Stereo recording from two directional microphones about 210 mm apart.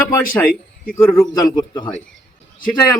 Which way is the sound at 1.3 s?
15° left (ahead or behind).